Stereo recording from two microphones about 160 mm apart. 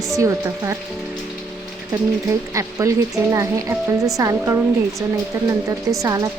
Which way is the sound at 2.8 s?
20° right (ahead or behind).